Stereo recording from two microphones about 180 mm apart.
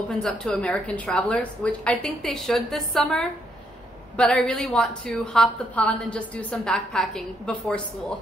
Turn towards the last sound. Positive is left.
turn(degrees=5)  # may be behind; listen again after turning